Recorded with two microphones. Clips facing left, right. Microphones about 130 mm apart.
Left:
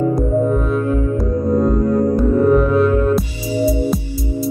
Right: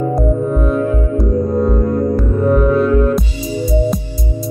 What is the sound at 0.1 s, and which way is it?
Music, centre (ahead or behind).